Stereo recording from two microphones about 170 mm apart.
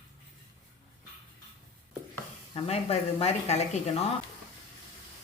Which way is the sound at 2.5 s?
35° left (ahead or behind).